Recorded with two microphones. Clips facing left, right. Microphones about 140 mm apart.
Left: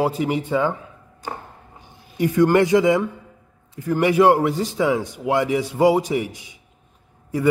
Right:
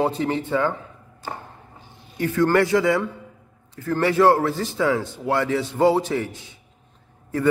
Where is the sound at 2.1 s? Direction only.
15° left (ahead or behind).